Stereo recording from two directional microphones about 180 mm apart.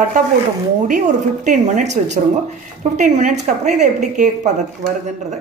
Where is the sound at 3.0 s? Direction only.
45° right (ahead or behind).